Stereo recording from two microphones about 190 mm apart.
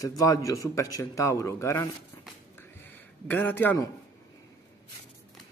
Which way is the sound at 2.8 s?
10° left (ahead or behind).